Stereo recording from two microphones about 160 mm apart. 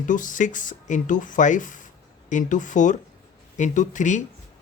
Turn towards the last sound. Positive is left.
turn(degrees=50)  # may be behind; listen again after turning